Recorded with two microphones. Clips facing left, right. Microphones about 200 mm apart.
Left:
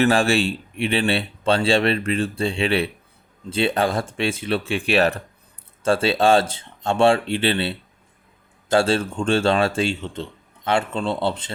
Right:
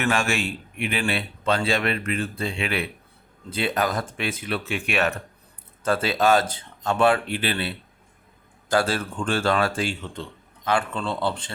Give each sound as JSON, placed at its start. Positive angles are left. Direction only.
{"t": 0.0, "sound": "speech", "side_deg": 35}